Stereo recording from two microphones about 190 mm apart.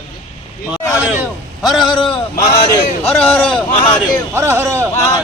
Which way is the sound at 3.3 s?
5° left (ahead or behind).